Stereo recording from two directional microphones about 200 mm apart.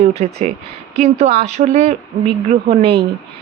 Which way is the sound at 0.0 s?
30° right (ahead or behind).